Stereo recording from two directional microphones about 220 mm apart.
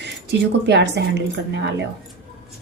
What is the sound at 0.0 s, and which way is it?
Speech, 50° right (ahead or behind).